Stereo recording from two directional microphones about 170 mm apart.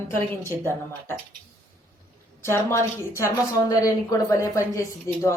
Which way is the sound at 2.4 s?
15° left (ahead or behind).